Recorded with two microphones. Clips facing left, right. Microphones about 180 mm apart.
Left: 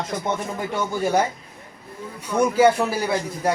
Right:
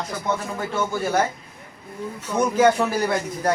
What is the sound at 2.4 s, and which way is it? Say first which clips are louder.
Speech: left 1 dB; 10° left (ahead or behind).